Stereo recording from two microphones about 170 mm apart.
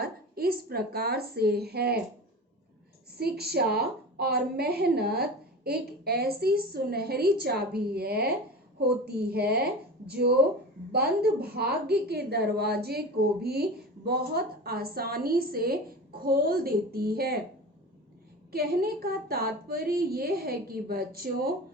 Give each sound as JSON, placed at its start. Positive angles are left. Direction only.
{"t": 0.0, "sound": "a woman's voice", "side_deg": -65}
{"t": 3.2, "sound": "a woman's voice", "side_deg": -70}
{"t": 18.5, "sound": "a woman's voice", "side_deg": -65}